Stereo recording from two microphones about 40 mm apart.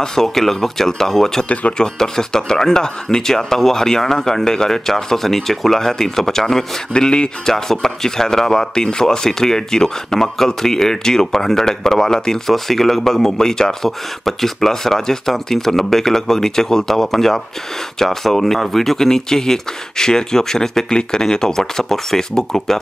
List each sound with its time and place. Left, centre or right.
0.0 s speech: centre
6.9 s speech: left